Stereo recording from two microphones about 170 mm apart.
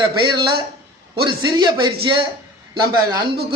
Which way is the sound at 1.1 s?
25° right (ahead or behind).